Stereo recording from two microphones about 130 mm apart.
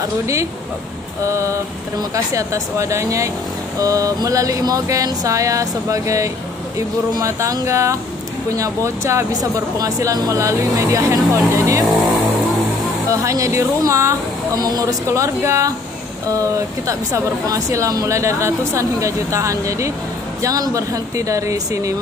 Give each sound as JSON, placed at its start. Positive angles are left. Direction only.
{"t": 1.2, "sound": "speech", "side_deg": -25}
{"t": 13.1, "sound": "speech", "side_deg": -25}